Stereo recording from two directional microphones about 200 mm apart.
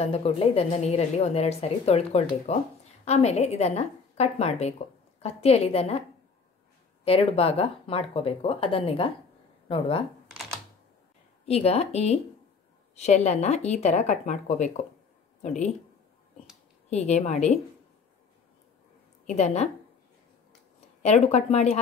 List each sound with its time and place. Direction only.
0.0 s a woman's voice: 30° left (ahead or behind)
7.1 s speech: 30° left (ahead or behind)
11.4 s a woman's voice: 30° left (ahead or behind)
16.9 s a woman's voice: 35° left (ahead or behind)
19.2 s a woman's voice: 35° left (ahead or behind)
21.0 s a woman's voice: 35° left (ahead or behind)